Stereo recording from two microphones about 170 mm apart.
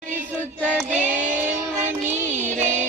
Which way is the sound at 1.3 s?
10° right (ahead or behind).